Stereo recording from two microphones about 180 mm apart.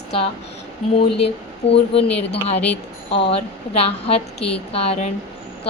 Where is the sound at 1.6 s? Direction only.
75° left (ahead or behind).